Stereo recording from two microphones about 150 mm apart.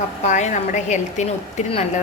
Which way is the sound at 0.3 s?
50° left (ahead or behind).